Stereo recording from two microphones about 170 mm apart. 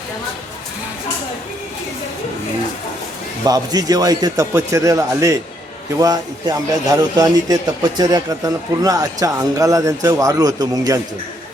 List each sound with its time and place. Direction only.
3.4 s a man's voice: 20° right (ahead or behind)